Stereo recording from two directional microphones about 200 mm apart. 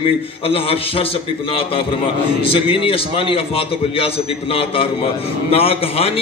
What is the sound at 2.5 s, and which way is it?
Speech, 25° left (ahead or behind).